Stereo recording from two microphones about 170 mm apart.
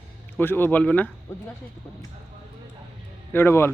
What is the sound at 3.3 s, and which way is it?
Speech, 15° left (ahead or behind).